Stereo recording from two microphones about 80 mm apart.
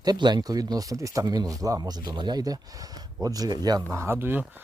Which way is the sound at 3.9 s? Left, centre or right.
Right.